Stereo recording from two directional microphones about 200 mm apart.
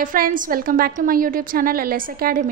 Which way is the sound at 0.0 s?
45° right (ahead or behind).